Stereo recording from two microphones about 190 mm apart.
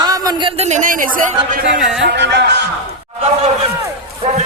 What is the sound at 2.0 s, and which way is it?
Speech, 65° right (ahead or behind).